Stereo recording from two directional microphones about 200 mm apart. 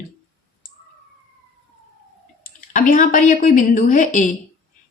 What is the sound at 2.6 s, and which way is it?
A woman's voice, 40° left (ahead or behind).